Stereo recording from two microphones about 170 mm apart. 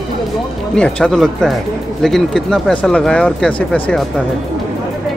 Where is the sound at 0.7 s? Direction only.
5° left (ahead or behind).